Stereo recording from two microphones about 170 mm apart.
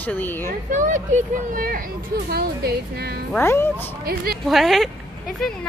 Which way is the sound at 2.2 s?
70° right (ahead or behind).